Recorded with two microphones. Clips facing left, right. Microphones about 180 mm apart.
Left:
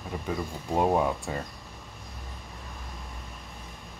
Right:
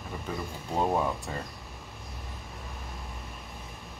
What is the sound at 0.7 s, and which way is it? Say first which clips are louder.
Speech: left 3 dB; 15° left (ahead or behind).